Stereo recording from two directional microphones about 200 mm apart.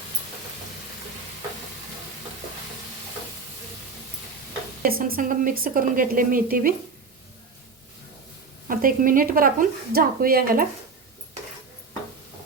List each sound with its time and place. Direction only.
4.8 s a woman's voice: 45° right (ahead or behind)
8.6 s a woman's voice: 45° right (ahead or behind)